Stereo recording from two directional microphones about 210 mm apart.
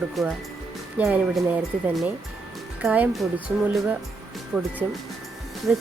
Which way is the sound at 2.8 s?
5° right (ahead or behind).